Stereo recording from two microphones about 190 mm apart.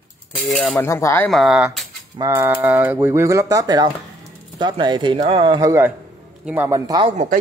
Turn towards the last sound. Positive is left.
turn(degrees=-20)  # may be behind; listen again after turning